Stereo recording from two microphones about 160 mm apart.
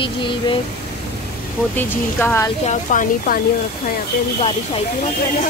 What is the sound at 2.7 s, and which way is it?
Speech, 55° left (ahead or behind).